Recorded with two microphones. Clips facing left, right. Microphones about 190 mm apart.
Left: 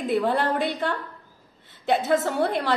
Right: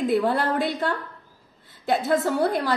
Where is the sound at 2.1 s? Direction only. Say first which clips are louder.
Right 2 dB; 20° left (ahead or behind).